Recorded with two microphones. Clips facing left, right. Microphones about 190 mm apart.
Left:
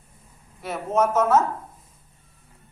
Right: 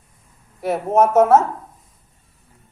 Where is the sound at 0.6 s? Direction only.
60° right (ahead or behind).